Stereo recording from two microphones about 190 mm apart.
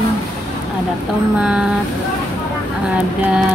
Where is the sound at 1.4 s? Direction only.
5° right (ahead or behind).